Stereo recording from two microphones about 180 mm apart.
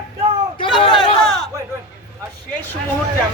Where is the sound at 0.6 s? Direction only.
30° left (ahead or behind).